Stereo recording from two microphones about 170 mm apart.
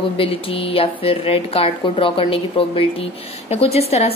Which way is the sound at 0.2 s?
35° left (ahead or behind).